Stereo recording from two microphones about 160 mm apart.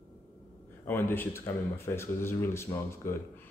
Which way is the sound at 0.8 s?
15° left (ahead or behind).